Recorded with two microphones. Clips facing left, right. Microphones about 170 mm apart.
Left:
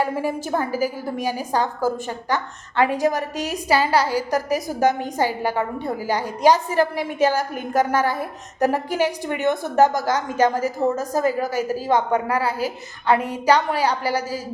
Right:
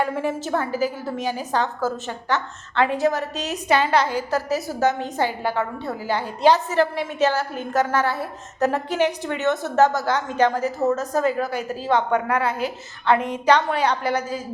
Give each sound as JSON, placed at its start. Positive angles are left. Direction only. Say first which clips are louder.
{"t": 0.0, "sound": "a woman's voice", "louder": "left 1 dB", "side_deg": 10}
{"t": 3.9, "sound": "a woman's voice", "louder": "left 1 dB", "side_deg": 35}
{"t": 4.3, "sound": "a woman's voice", "louder": "left 1 dB", "side_deg": 15}
{"t": 12.3, "sound": "a woman's voice", "louder": "even", "side_deg": 35}
{"t": 12.6, "sound": "a woman's voice", "louder": "even", "side_deg": 10}
{"t": 13.8, "sound": "a woman's voice", "louder": "even", "side_deg": 35}